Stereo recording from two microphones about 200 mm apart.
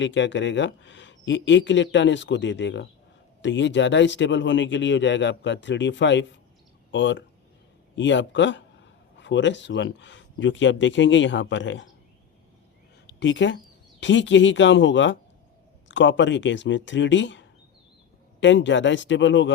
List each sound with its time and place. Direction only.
0.0 s speech: 65° left (ahead or behind)
13.1 s a woman's voice: 60° left (ahead or behind)